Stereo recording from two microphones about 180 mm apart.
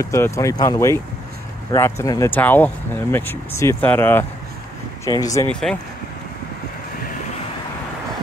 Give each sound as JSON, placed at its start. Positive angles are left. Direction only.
{"t": 0.0, "sound": "speech", "side_deg": 15}
{"t": 5.5, "sound": "speech", "side_deg": 5}